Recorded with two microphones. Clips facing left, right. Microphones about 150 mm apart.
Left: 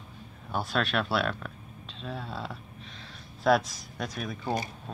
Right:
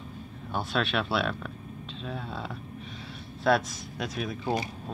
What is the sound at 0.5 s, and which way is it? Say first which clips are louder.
Speech: even; centre (ahead or behind).